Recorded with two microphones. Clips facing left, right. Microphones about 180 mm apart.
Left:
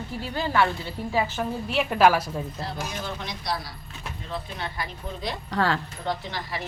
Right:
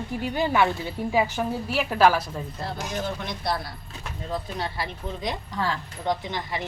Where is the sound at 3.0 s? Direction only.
55° right (ahead or behind).